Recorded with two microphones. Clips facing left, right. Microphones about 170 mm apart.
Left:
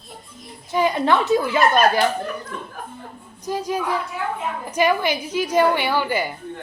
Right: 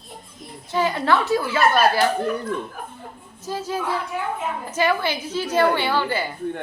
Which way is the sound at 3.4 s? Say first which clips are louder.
Left 2 dB; 15° left (ahead or behind).